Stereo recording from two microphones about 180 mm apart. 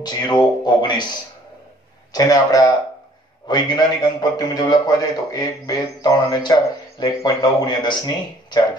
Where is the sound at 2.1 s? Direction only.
20° left (ahead or behind).